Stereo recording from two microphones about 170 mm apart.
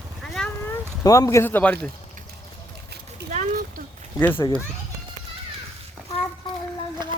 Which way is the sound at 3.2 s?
75° right (ahead or behind).